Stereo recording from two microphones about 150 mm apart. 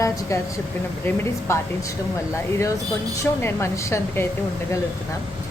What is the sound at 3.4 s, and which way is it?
Speech, 15° left (ahead or behind).